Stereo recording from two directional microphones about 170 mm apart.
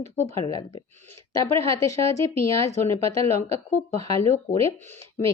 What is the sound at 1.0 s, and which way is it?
Speech, 15° left (ahead or behind).